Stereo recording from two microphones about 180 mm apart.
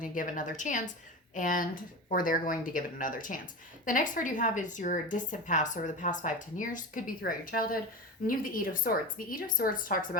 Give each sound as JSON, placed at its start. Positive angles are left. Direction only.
{"t": 0.0, "sound": "speech", "side_deg": 45}